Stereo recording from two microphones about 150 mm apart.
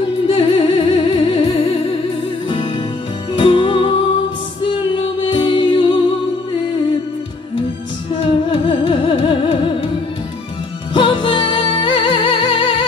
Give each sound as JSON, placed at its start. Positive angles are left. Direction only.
{"t": 0.3, "sound": "music", "side_deg": 35}
{"t": 8.1, "sound": "music", "side_deg": 35}
{"t": 10.9, "sound": "music", "side_deg": 35}